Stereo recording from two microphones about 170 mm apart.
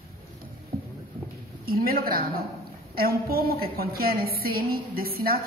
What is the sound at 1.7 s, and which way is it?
A woman's voice, 60° right (ahead or behind).